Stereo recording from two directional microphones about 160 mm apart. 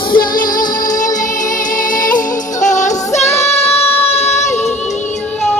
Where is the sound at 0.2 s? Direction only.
60° left (ahead or behind).